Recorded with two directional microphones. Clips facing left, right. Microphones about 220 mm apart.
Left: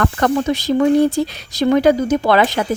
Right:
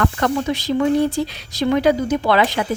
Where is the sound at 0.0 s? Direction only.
45° left (ahead or behind).